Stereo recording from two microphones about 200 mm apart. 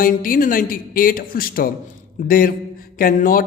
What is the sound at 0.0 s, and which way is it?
A man's voice, 45° left (ahead or behind).